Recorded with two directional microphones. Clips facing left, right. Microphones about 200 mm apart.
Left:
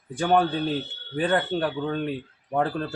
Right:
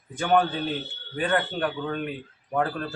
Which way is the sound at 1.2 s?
30° left (ahead or behind).